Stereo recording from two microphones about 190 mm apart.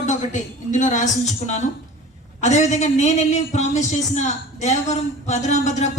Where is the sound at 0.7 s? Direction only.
40° left (ahead or behind).